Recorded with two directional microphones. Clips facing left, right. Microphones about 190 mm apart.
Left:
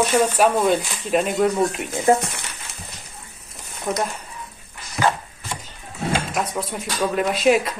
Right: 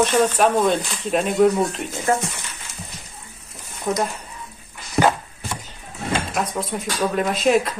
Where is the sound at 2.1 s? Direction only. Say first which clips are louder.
Left 4 dB; 20° left (ahead or behind).